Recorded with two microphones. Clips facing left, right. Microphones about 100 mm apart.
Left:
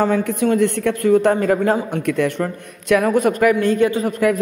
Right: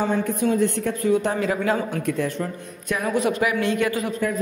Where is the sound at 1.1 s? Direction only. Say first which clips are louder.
Left 8 dB; 55° left (ahead or behind).